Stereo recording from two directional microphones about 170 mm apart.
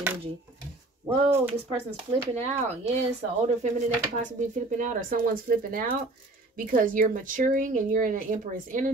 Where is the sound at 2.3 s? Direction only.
40° right (ahead or behind).